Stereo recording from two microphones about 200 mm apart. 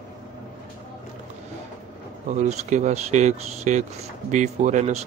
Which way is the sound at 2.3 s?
35° right (ahead or behind).